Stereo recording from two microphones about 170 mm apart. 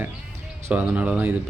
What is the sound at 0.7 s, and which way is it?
Speech, 10° right (ahead or behind).